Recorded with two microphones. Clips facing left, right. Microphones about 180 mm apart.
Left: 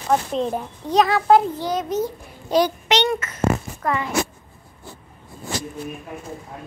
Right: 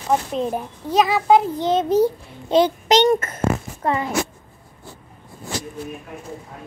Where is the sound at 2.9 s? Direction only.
50° right (ahead or behind).